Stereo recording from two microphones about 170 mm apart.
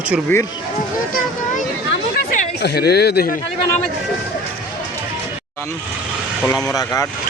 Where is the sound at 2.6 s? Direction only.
75° left (ahead or behind).